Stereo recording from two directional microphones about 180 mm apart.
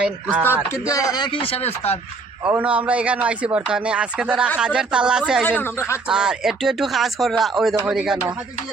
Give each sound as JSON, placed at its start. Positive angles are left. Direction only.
{"t": 0.0, "sound": "speech", "side_deg": -5}
{"t": 0.7, "sound": "speech", "side_deg": 20}
{"t": 2.4, "sound": "a man's voice", "side_deg": -10}
{"t": 5.5, "sound": "speech", "side_deg": 10}
{"t": 6.1, "sound": "a man's voice", "side_deg": -5}